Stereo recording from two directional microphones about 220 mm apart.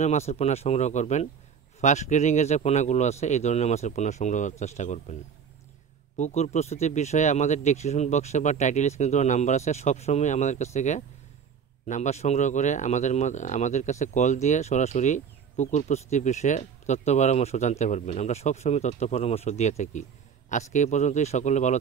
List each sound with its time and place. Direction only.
0.0 s speech: 30° left (ahead or behind)
6.1 s speech: 30° left (ahead or behind)